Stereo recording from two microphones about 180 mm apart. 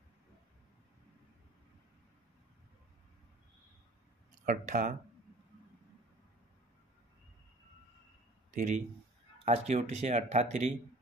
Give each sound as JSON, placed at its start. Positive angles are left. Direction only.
{"t": 4.5, "sound": "speech", "side_deg": -50}
{"t": 8.5, "sound": "speech", "side_deg": -45}